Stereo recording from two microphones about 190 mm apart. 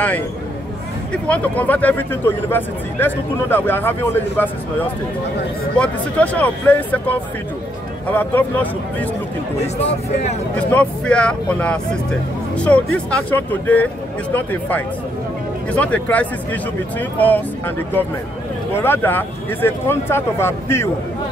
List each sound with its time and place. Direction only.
1.1 s speech: 5° left (ahead or behind)
5.8 s speech: 10° left (ahead or behind)
8.2 s speech: 10° left (ahead or behind)
10.5 s speech: 5° left (ahead or behind)